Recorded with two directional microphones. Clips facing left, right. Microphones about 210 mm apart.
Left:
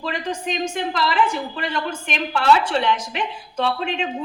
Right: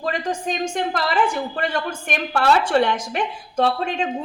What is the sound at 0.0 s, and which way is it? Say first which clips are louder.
A woman's voice: right 2 dB; 45° right (ahead or behind).